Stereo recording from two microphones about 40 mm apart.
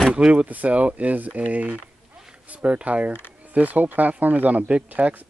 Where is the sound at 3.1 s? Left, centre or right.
Left.